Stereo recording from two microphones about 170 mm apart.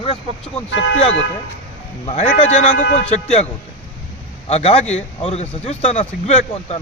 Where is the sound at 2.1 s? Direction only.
35° left (ahead or behind).